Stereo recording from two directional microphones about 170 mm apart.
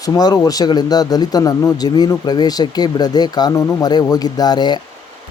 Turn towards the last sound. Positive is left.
turn(degrees=25)  # may be behind; listen again after turning